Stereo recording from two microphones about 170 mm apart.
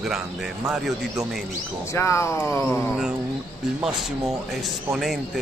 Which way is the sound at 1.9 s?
15° left (ahead or behind).